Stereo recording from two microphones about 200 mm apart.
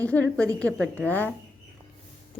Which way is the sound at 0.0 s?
5° left (ahead or behind).